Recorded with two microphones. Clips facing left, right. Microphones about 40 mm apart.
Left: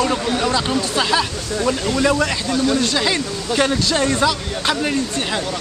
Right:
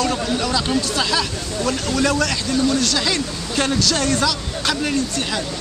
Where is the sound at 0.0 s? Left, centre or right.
Left.